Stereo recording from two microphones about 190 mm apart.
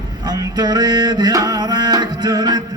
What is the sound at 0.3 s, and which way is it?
Music, 20° right (ahead or behind).